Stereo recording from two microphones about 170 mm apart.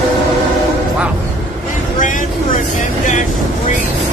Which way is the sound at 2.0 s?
50° left (ahead or behind).